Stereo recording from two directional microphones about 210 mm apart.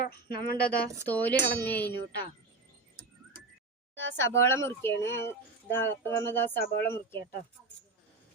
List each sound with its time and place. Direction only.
0.0 s a woman's voice: 45° left (ahead or behind)
1.0 s speech: 5° left (ahead or behind)
4.2 s speech: 10° left (ahead or behind)